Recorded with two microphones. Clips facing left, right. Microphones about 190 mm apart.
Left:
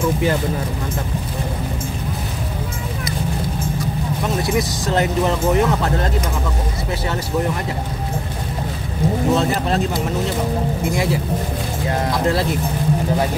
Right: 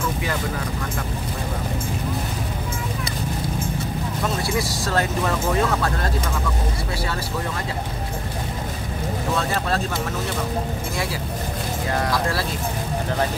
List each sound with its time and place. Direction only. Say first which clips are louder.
4.4 s speech: left 4 dB; 20° left (ahead or behind)
9.3 s speech: left 3 dB; 20° left (ahead or behind)
12.1 s speech: left 5 dB; 20° left (ahead or behind)